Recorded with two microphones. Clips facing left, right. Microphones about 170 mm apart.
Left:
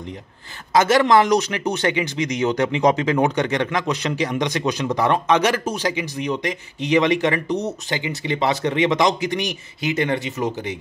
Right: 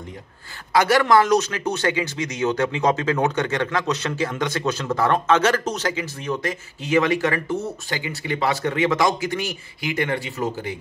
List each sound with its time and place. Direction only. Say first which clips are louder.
0.7 s speech: left 2 dB; 20° left (ahead or behind)